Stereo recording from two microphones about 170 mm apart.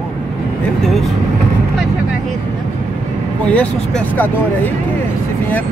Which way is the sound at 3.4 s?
10° left (ahead or behind).